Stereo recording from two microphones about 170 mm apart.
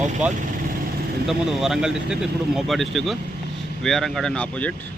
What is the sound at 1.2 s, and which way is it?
Speech, centre (ahead or behind).